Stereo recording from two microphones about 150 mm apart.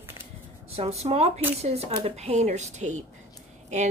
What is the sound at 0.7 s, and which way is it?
Speech, 45° right (ahead or behind).